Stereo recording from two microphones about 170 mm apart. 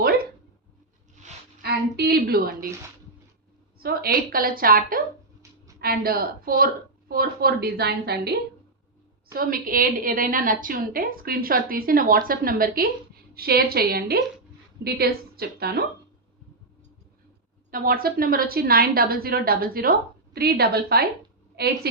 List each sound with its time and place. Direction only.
1.6 s a woman's voice: 70° right (ahead or behind)
3.8 s a woman's voice: 60° right (ahead or behind)
9.3 s a woman's voice: 60° right (ahead or behind)
17.7 s a woman's voice: 60° right (ahead or behind); by 21.7 s 75° right (ahead or behind)